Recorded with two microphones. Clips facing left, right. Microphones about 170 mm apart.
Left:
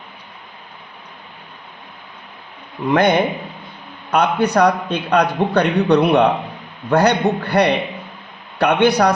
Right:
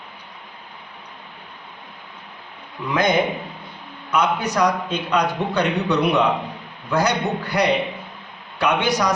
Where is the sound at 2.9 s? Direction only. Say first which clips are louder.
Left 4 dB; 60° left (ahead or behind).